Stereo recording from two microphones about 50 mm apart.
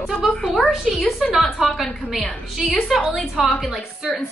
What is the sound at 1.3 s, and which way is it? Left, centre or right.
A woman's voice, centre.